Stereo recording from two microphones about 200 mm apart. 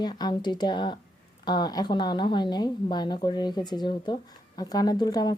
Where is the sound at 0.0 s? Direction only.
20° left (ahead or behind).